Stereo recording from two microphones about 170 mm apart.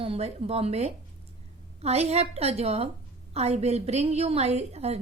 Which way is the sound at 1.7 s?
40° right (ahead or behind).